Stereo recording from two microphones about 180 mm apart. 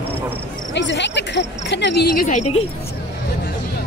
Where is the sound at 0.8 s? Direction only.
80° left; by 2.3 s 60° left (ahead or behind).